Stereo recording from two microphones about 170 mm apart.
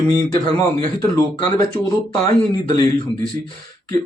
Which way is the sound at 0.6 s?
20° left (ahead or behind).